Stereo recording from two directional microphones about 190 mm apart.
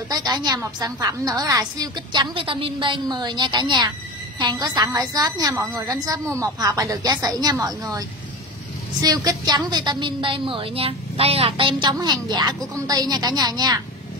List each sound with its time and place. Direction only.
0.1 s a woman's voice: 20° right (ahead or behind)
9.0 s a woman's voice: 20° right (ahead or behind)